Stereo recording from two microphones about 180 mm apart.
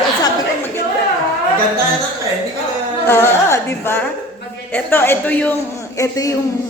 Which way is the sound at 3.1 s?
15° left (ahead or behind).